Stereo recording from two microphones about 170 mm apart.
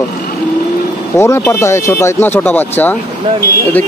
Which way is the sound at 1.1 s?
15° left (ahead or behind).